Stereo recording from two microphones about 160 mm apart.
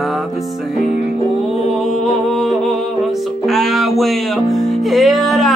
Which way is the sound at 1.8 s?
Centre (ahead or behind).